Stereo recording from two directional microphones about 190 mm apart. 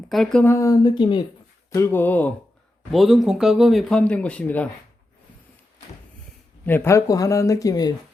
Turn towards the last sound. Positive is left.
turn(degrees=20)  # may be behind; listen again after turning